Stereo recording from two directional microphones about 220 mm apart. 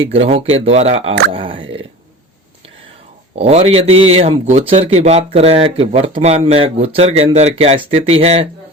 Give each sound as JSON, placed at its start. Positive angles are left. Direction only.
{"t": 0.0, "sound": "a man's voice", "side_deg": -25}
{"t": 3.3, "sound": "a man's voice", "side_deg": -25}